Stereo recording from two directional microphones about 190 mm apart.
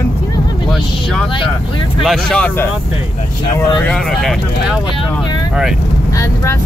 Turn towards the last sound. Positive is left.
turn(degrees=5)  # may be behind; listen again after turning